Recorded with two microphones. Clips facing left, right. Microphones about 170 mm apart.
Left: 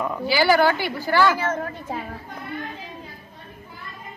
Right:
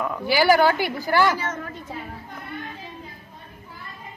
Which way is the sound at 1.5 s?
55° left (ahead or behind).